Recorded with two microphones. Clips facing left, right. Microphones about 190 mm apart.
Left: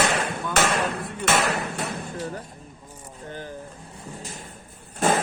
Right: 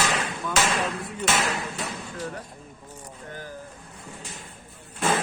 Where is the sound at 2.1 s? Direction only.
30° left (ahead or behind).